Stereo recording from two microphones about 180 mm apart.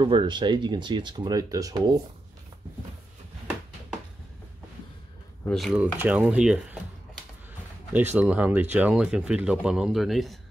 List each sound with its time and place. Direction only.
0.0 s speech: 25° right (ahead or behind)
5.4 s speech: 5° left (ahead or behind)
7.9 s speech: 10° right (ahead or behind)